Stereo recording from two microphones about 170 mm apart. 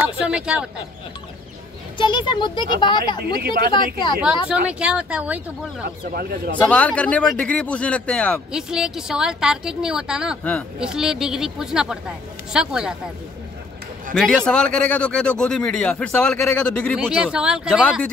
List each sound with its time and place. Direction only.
0.0 s speech: 5° right (ahead or behind)
2.0 s speech: 30° left (ahead or behind)
3.2 s speech: 65° right (ahead or behind)
4.5 s speech: 5° right (ahead or behind)
5.9 s speech: 65° right (ahead or behind)
6.6 s a man's voice: 5° left (ahead or behind)
8.5 s a man's voice: 5° right (ahead or behind)
14.1 s a man's voice: 5° left (ahead or behind)